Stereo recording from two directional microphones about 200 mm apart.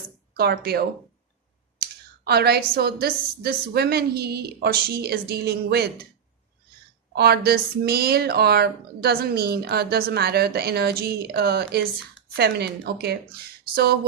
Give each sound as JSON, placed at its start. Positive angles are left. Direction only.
{"t": 0.3, "sound": "speech", "side_deg": -50}
{"t": 1.8, "sound": "a sound", "side_deg": -50}
{"t": 2.7, "sound": "speech", "side_deg": -50}
{"t": 7.2, "sound": "speech", "side_deg": -50}